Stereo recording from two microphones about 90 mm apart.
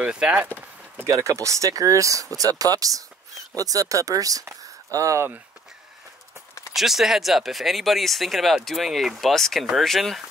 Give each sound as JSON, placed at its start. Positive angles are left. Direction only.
{"t": 0.0, "sound": "speech", "side_deg": -10}
{"t": 1.0, "sound": "speech", "side_deg": -35}
{"t": 6.7, "sound": "speech", "side_deg": 0}